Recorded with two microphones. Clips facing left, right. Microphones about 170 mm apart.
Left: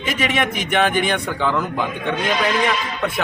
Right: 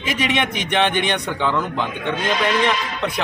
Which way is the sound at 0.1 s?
Centre (ahead or behind).